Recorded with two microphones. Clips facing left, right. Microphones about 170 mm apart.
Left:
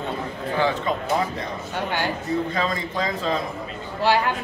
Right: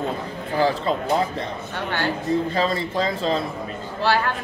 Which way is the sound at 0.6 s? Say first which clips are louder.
Right 2 dB; 35° right (ahead or behind).